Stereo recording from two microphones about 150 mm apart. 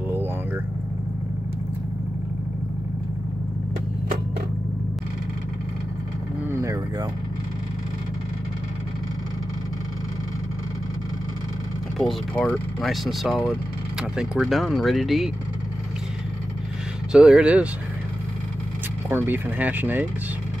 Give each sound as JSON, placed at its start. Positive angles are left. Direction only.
{"t": 6.5, "sound": "vehicle", "side_deg": -20}
{"t": 12.0, "sound": "speech", "side_deg": 5}
{"t": 17.1, "sound": "speech", "side_deg": -5}
{"t": 19.0, "sound": "speech", "side_deg": -15}